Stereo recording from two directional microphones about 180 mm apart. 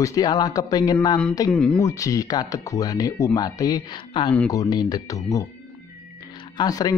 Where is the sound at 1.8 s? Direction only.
15° left (ahead or behind).